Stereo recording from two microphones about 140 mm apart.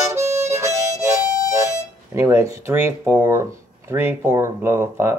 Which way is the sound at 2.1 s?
20° right (ahead or behind).